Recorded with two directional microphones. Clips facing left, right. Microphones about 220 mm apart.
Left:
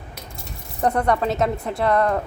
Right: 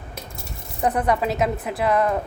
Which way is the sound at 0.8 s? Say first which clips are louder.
Left 1 dB; centre (ahead or behind).